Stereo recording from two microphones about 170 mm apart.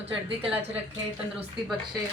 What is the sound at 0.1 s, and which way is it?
Speech, 35° right (ahead or behind).